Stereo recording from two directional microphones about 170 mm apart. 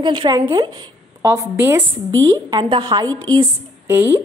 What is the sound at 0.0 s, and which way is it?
A woman's voice, 25° right (ahead or behind).